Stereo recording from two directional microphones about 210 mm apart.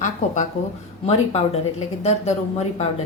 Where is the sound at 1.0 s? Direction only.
30° left (ahead or behind).